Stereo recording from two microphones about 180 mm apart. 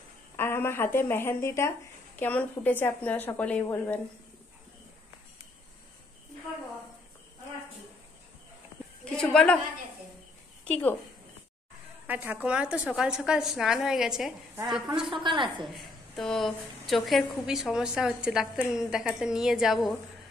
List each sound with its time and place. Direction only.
0.4 s a woman's voice: 15° left (ahead or behind)
9.1 s a woman's voice: 5° left (ahead or behind)
10.7 s a woman's voice: 10° left (ahead or behind)
12.1 s a woman's voice: 10° right (ahead or behind)
15.2 s a woman's voice: 25° right (ahead or behind)
15.6 s a woman's voice: centre (ahead or behind)